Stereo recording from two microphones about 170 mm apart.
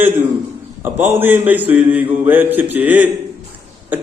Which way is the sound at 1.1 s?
10° right (ahead or behind).